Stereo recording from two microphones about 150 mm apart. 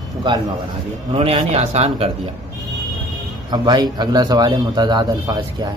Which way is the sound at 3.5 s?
25° right (ahead or behind).